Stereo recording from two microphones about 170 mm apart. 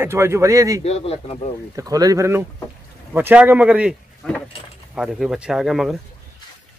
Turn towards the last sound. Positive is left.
turn(degrees=0)  # may be behind; listen again after turning